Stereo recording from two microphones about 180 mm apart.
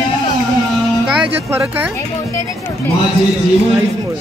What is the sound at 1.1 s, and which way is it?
Speech, 5° right (ahead or behind).